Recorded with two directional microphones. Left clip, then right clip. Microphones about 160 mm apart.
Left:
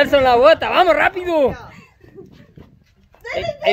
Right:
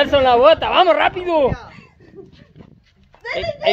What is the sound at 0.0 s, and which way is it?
Speech, 25° left (ahead or behind).